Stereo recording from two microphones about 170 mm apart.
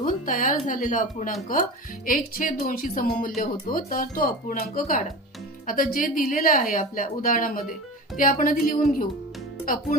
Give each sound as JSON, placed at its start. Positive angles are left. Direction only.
{"t": 0.0, "sound": "a woman's voice", "side_deg": 50}